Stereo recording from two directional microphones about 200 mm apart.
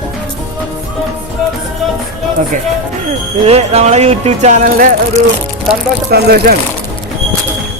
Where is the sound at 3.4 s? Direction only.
30° right (ahead or behind).